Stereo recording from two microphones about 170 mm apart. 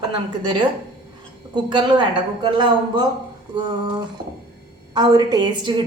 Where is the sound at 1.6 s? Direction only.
25° right (ahead or behind).